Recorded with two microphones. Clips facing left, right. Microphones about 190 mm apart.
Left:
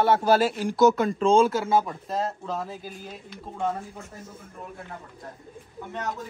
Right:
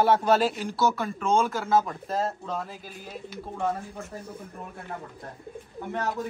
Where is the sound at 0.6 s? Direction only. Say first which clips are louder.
Left 7 dB; 20° left (ahead or behind).